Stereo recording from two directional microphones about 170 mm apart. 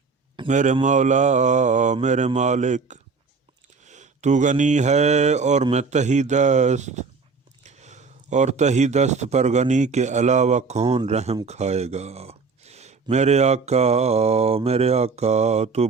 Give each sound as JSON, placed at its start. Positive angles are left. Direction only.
{"t": 0.4, "sound": "speech", "side_deg": -45}
{"t": 3.8, "sound": "mantra", "side_deg": -45}
{"t": 5.7, "sound": "speech", "side_deg": -45}